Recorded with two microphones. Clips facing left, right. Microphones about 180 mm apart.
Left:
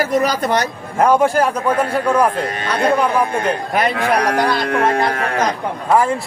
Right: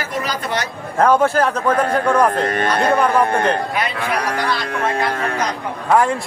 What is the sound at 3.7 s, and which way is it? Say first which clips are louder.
Speech: left 5 dB; 45° left (ahead or behind).